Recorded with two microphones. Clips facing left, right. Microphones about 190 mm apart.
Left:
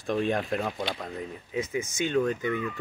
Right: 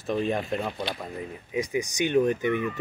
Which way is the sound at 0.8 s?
10° right (ahead or behind).